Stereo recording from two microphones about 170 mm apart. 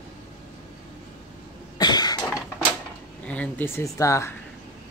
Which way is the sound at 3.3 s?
10° left (ahead or behind).